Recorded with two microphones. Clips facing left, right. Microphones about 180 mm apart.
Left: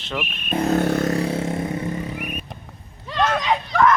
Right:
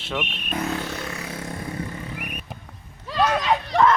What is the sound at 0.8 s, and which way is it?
Vehicle, 50° left (ahead or behind).